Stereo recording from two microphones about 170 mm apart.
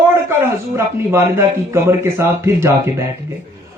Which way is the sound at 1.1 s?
15° right (ahead or behind).